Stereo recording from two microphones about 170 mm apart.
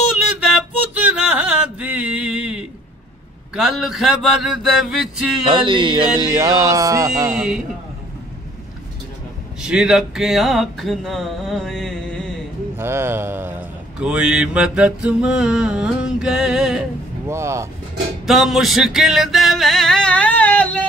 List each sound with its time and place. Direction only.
0.1 s music: 5° right (ahead or behind)
3.5 s mantra: centre (ahead or behind)
5.5 s speech: 30° right (ahead or behind)
7.3 s mantra: 5° right (ahead or behind)
9.6 s speech: 5° right (ahead or behind)
12.7 s mantra: 15° right (ahead or behind)
17.3 s speech: 15° right (ahead or behind)
18.2 s music: centre (ahead or behind)